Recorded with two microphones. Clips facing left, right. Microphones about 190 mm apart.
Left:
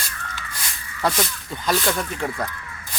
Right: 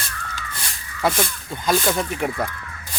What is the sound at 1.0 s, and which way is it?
Speech, 10° right (ahead or behind).